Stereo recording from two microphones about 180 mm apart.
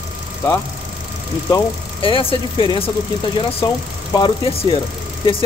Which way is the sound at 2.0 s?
30° left (ahead or behind).